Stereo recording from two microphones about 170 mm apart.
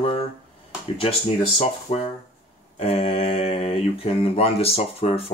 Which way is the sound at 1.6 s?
40° left (ahead or behind).